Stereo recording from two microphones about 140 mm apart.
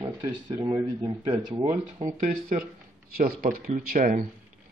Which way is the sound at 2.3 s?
85° right.